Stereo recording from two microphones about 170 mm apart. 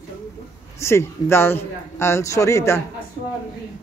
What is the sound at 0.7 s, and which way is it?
A man's voice, 15° left (ahead or behind).